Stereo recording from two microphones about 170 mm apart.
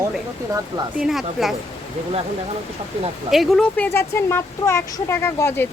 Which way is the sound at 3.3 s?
Centre (ahead or behind).